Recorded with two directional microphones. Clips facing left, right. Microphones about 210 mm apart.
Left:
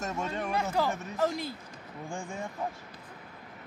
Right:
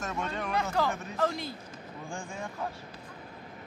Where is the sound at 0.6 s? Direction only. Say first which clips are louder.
Even; 10° left (ahead or behind).